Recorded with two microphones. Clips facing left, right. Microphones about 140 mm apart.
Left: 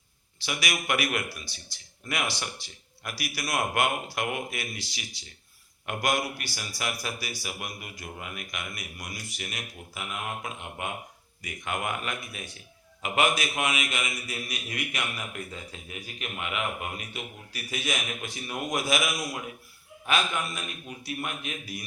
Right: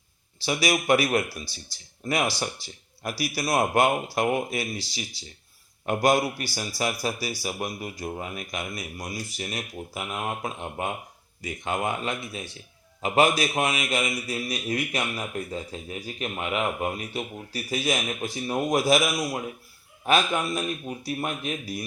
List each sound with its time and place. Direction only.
0.4 s a man's voice: 30° right (ahead or behind)